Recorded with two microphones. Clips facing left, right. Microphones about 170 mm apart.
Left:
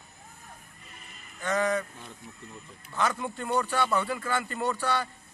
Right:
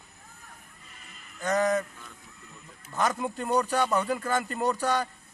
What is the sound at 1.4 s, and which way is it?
Speech, 40° right (ahead or behind).